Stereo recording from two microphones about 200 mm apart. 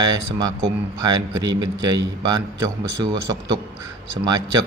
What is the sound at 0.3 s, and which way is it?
A man's voice, 20° right (ahead or behind).